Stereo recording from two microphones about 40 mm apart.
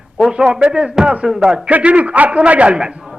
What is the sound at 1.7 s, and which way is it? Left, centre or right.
Speech, right.